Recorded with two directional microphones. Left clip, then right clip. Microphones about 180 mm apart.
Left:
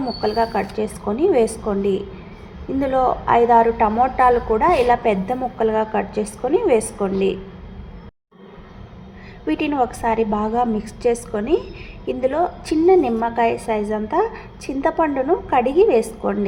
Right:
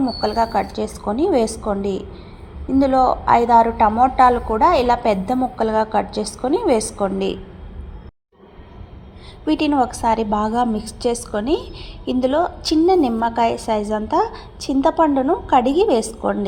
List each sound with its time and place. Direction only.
0.2 s a woman's voice: 25° right (ahead or behind)
9.5 s a woman's voice: 30° right (ahead or behind)